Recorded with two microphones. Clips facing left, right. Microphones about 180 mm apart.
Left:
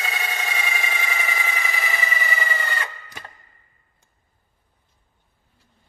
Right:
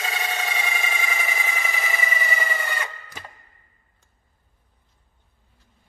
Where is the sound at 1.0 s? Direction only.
10° right (ahead or behind).